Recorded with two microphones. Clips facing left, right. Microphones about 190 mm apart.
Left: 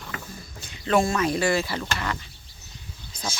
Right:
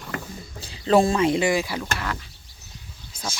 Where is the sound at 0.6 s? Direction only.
30° right (ahead or behind).